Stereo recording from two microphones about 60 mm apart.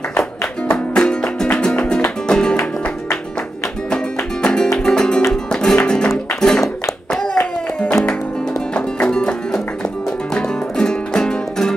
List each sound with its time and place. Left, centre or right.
0.9 s music: centre
3.9 s music: centre
7.8 s music: left; by 11.7 s centre